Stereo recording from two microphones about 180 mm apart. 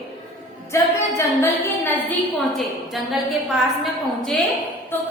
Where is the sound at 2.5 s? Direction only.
Centre (ahead or behind).